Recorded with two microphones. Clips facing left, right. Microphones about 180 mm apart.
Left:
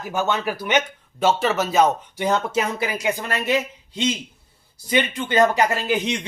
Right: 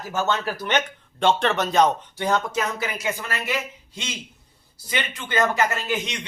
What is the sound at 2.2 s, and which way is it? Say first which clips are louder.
A man's voice: left 2 dB; 20° left (ahead or behind).